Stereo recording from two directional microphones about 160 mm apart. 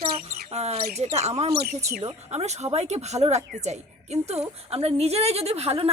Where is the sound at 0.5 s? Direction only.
40° right (ahead or behind).